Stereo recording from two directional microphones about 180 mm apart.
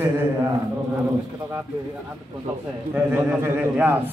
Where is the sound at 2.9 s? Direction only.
10° right (ahead or behind).